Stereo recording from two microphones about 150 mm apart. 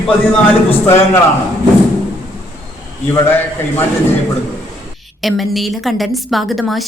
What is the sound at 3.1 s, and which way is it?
Speech, 15° left (ahead or behind).